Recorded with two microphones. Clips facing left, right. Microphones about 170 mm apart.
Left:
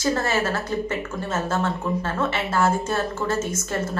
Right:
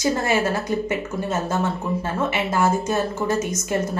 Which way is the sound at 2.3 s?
15° right (ahead or behind).